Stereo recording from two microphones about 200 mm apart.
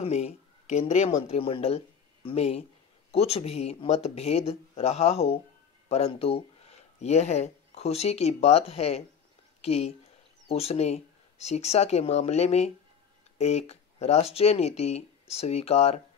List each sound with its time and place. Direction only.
0.0 s speech: 35° left (ahead or behind)